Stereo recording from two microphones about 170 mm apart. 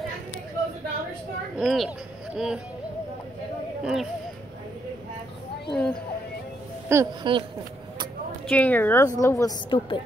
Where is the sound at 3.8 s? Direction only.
Centre (ahead or behind).